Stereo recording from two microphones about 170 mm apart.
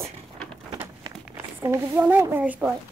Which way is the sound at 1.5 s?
15° right (ahead or behind).